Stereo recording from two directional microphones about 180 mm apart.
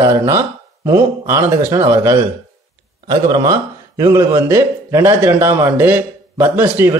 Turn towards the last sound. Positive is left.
turn(degrees=-15)  # may be behind; listen again after turning